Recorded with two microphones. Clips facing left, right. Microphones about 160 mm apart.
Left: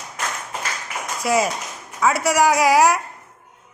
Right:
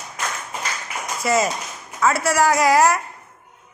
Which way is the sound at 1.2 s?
10° left (ahead or behind).